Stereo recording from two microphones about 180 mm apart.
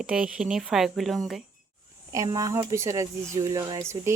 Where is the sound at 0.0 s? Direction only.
5° right (ahead or behind).